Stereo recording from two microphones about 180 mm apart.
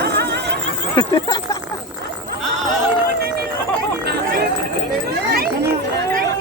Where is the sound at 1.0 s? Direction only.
20° left (ahead or behind).